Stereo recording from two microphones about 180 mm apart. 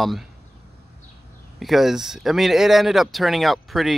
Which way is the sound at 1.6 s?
Centre (ahead or behind).